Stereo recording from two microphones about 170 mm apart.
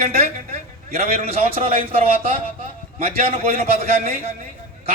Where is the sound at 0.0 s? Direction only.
40° right (ahead or behind).